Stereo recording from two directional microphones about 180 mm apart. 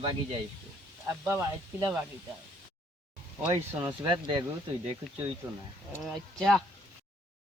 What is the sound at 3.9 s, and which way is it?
Speech, 25° right (ahead or behind).